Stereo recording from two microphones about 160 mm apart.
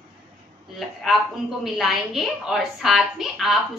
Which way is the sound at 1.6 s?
Centre (ahead or behind).